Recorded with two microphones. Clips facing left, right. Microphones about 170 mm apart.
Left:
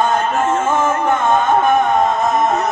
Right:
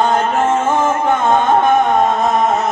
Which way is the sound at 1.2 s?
20° right (ahead or behind).